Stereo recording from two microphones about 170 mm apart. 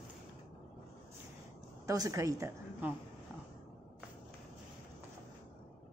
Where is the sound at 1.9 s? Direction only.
20° right (ahead or behind).